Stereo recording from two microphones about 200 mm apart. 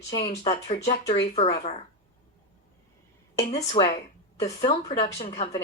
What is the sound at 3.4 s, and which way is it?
Speech, 30° left (ahead or behind).